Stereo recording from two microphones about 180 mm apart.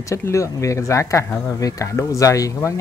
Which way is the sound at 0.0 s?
15° left (ahead or behind).